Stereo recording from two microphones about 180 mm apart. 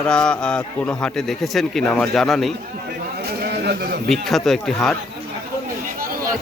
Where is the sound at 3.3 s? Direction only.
65° right (ahead or behind).